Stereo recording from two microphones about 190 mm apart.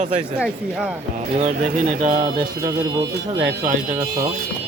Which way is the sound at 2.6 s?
25° right (ahead or behind).